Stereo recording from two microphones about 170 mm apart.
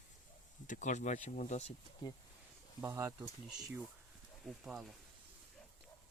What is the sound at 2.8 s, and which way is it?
Speech, 20° right (ahead or behind).